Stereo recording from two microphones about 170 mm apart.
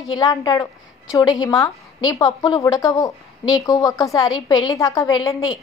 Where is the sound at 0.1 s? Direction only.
25° left (ahead or behind).